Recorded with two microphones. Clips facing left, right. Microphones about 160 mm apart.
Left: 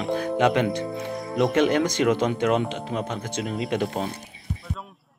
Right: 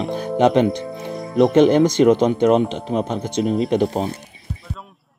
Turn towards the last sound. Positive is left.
turn(degrees=-20)  # may be behind; listen again after turning